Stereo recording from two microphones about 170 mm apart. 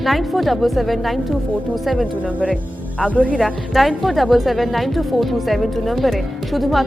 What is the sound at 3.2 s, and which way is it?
A woman's voice, 5° left (ahead or behind).